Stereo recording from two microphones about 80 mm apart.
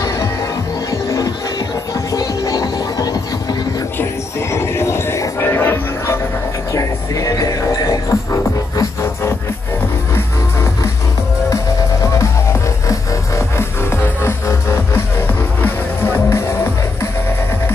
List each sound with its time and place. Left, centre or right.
2.1 s music: left
4.6 s music: left
6.7 s music: left
11.5 s music: left
13.6 s music: left